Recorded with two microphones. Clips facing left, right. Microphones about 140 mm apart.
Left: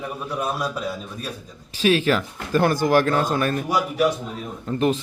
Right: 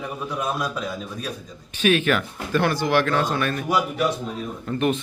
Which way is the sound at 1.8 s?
30° left (ahead or behind).